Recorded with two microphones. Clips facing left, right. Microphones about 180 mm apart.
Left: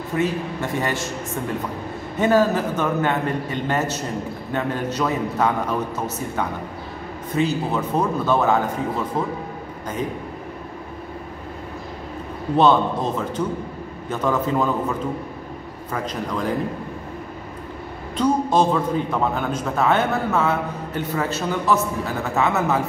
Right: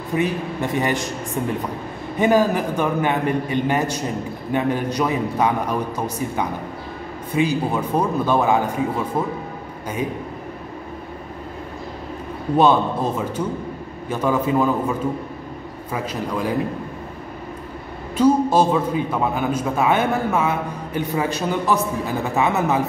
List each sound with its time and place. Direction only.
0.1 s a man's voice: 15° right (ahead or behind)
12.5 s a man's voice: 10° right (ahead or behind)
18.1 s a man's voice: 10° right (ahead or behind)